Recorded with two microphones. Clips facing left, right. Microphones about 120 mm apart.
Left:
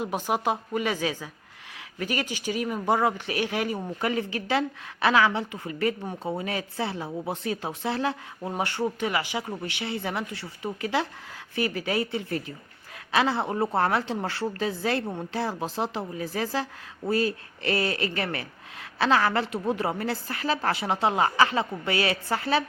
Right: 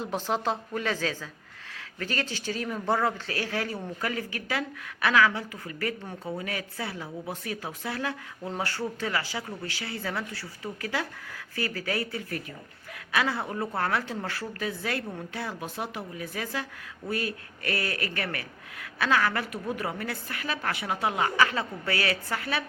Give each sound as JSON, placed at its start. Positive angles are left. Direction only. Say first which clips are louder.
{"t": 0.0, "sound": "speech", "louder": "left 2 dB", "side_deg": 10}